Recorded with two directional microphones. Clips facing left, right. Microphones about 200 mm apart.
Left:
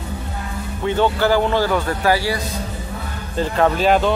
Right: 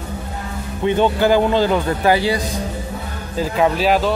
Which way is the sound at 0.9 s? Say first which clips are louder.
Right 2 dB; 15° right (ahead or behind).